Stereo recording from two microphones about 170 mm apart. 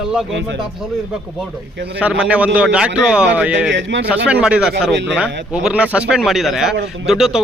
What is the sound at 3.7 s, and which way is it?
Speech, 90° right.